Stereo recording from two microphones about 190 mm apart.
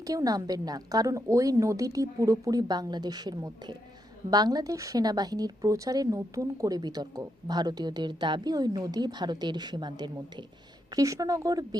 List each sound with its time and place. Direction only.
0.0 s a woman's voice: 20° right (ahead or behind)